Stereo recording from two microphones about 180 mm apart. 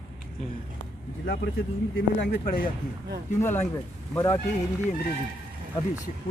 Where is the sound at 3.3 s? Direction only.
10° left (ahead or behind).